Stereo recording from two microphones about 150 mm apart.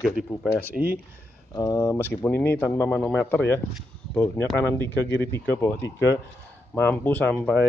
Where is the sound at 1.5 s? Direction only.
20° left (ahead or behind).